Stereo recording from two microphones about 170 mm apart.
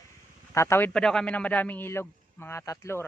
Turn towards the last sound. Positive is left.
turn(degrees=15)  # may be behind; listen again after turning